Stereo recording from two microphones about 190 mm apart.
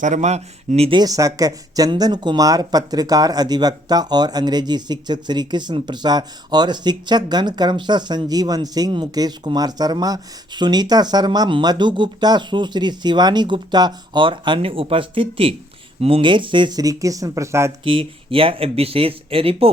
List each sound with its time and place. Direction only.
0.0 s speech: 40° right (ahead or behind); by 17.7 s 15° right (ahead or behind)
17.8 s speech: 30° right (ahead or behind)